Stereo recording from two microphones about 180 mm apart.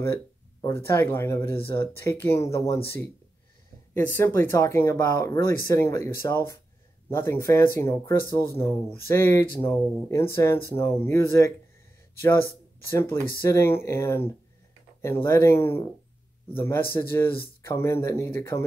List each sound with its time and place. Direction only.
0.0 s speech: 15° left (ahead or behind)
12.9 s speech: 15° left (ahead or behind)